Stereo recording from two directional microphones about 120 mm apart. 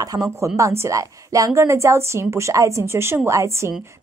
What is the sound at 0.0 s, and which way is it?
A woman's voice, 30° right (ahead or behind).